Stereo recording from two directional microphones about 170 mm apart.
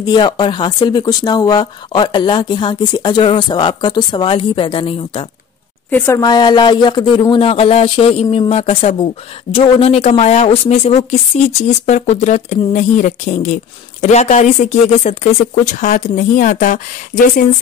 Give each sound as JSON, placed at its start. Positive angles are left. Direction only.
{"t": 0.0, "sound": "speech", "side_deg": 25}
{"t": 5.9, "sound": "speech", "side_deg": 15}